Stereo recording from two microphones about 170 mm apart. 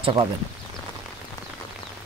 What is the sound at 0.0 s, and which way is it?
Speech, 30° right (ahead or behind).